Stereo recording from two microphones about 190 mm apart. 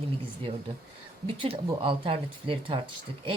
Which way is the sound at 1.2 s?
30° right (ahead or behind).